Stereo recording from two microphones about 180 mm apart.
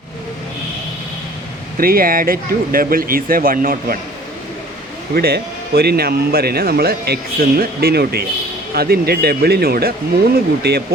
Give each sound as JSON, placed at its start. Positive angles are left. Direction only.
{"t": 1.8, "sound": "speech", "side_deg": -55}
{"t": 5.1, "sound": "speech", "side_deg": -60}